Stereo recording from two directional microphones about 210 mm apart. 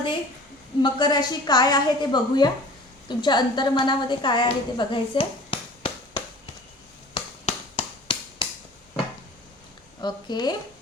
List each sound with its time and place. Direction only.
0.8 s a woman's voice: 20° left (ahead or behind)
7.1 s a sound: 25° left (ahead or behind)
10.0 s a woman's voice: 20° left (ahead or behind)